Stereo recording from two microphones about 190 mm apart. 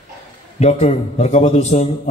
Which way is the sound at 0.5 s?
35° left (ahead or behind).